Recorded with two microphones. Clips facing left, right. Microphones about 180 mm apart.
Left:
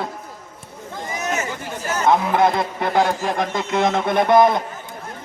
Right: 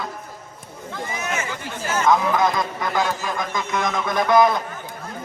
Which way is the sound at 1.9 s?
30° left (ahead or behind).